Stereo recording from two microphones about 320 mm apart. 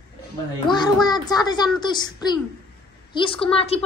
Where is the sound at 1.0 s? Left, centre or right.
Centre.